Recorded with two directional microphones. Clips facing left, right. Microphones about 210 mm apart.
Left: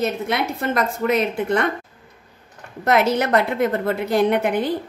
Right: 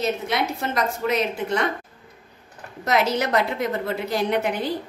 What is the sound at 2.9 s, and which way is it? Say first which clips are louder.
A woman's voice: left 4 dB; 55° left (ahead or behind).